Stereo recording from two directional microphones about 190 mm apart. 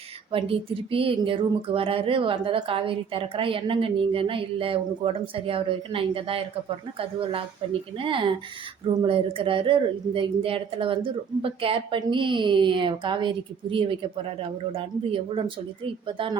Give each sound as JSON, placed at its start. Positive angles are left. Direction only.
{"t": 0.3, "sound": "speech", "side_deg": -30}